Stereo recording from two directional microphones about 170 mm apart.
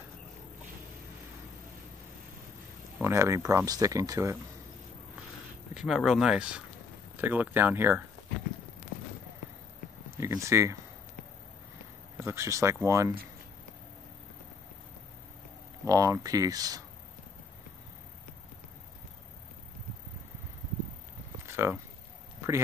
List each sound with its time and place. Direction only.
3.0 s speech: 15° right (ahead or behind)
5.8 s speech: centre (ahead or behind)
10.1 s speech: 15° right (ahead or behind)
12.2 s speech: 15° right (ahead or behind)
15.8 s speech: 20° right (ahead or behind)
21.5 s a sound: 15° right (ahead or behind)